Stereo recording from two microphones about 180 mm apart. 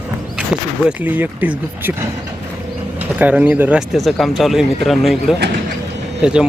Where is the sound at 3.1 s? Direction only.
10° right (ahead or behind).